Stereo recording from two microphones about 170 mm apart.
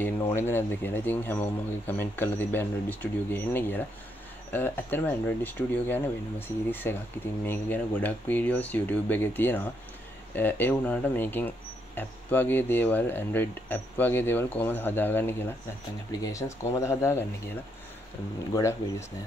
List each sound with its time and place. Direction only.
0.3 s speech: 10° left (ahead or behind)
18.5 s speech: 15° left (ahead or behind)